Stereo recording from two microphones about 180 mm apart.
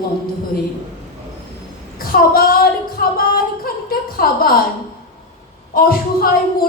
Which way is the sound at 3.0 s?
55° left (ahead or behind).